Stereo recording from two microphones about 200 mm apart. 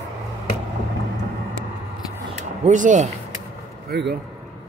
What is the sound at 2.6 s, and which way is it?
Speech, 40° right (ahead or behind).